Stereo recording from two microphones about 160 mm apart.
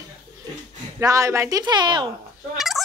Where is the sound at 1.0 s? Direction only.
20° right (ahead or behind).